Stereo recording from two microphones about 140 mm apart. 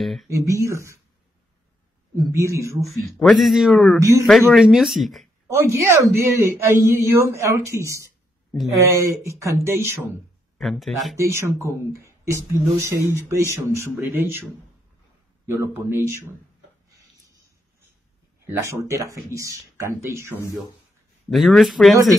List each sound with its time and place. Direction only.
0.0 s speech: centre (ahead or behind)
0.3 s speech: 20° right (ahead or behind)
2.3 s speech: 20° right (ahead or behind)
2.9 s speech: centre (ahead or behind)
5.5 s speech: 20° right (ahead or behind)
10.6 s speech: centre (ahead or behind)
11.1 s a man's voice: 20° right (ahead or behind)
15.4 s a man's voice: 15° right (ahead or behind)
16.9 s a sound: 25° right (ahead or behind)
18.4 s speech: 20° right (ahead or behind)
21.3 s speech: centre (ahead or behind)